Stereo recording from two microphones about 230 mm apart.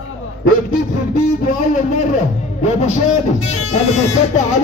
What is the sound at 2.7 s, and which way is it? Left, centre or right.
Speech, left.